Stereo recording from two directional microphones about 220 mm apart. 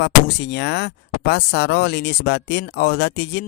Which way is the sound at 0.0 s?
50° left (ahead or behind).